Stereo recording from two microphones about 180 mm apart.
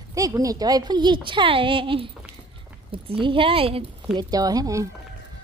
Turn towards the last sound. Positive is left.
turn(degrees=-20)  # may be behind; listen again after turning